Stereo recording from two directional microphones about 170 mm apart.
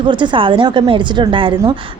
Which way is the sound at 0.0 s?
30° right (ahead or behind).